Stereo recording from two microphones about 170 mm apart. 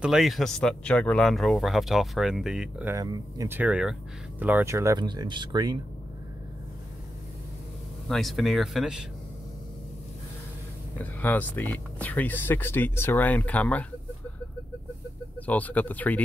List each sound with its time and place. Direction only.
0.0 s speech: centre (ahead or behind)
2.9 s speech: 20° right (ahead or behind)
8.1 s speech: centre (ahead or behind)
11.0 s speech: 10° left (ahead or behind)
15.3 s speech: 10° left (ahead or behind)